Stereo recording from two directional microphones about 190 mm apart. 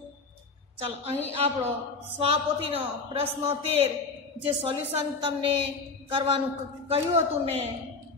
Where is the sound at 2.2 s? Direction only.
30° right (ahead or behind).